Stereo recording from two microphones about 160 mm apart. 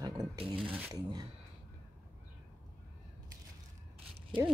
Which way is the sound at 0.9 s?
25° right (ahead or behind).